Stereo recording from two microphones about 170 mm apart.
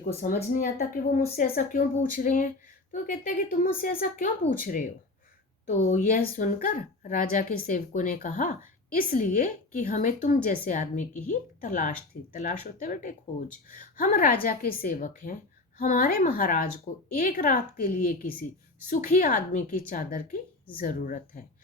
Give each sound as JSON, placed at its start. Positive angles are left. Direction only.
{"t": 0.5, "sound": "a woman's voice", "side_deg": 60}